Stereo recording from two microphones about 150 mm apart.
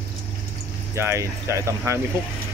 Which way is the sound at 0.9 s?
20° right (ahead or behind).